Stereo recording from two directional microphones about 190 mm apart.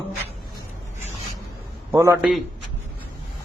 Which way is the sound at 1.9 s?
15° right (ahead or behind).